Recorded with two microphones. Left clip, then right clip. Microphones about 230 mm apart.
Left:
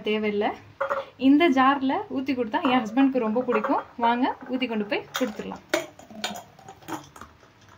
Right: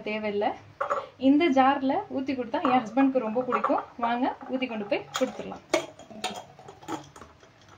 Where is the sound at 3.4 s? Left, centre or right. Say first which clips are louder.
Left 2 dB; left.